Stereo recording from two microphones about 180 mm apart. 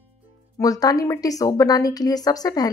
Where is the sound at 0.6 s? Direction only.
20° left (ahead or behind).